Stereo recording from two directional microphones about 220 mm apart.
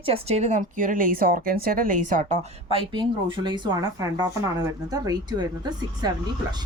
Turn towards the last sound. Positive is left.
turn(degrees=-20)  # may be behind; listen again after turning